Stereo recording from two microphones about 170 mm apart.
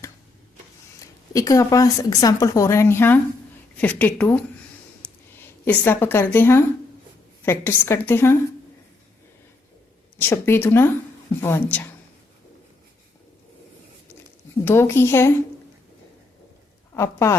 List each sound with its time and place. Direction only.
0.9 s a woman's voice: 20° left (ahead or behind)
5.4 s a woman's voice: 10° left (ahead or behind)
10.2 s a woman's voice: 15° left (ahead or behind)
14.6 s a woman's voice: 15° left (ahead or behind)
16.9 s a woman's voice: 15° left (ahead or behind)